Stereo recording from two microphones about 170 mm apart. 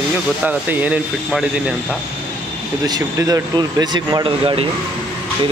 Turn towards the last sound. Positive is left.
turn(degrees=-30)  # may be behind; listen again after turning